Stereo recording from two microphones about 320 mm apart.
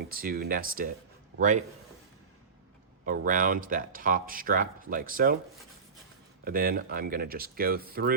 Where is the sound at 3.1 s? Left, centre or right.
Right.